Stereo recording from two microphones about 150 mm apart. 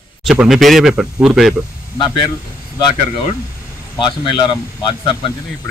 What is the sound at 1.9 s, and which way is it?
Speech, 30° left (ahead or behind).